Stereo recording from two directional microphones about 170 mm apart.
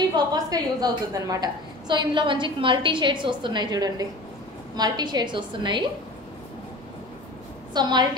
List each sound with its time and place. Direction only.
0.1 s a woman's voice: 25° right (ahead or behind)
7.7 s a woman's voice: 25° right (ahead or behind)